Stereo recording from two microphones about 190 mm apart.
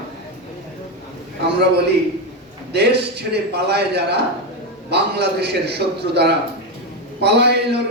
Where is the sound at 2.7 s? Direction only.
60° right (ahead or behind).